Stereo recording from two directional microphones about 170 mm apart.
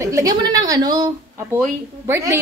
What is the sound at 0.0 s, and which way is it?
A woman's voice, 20° right (ahead or behind).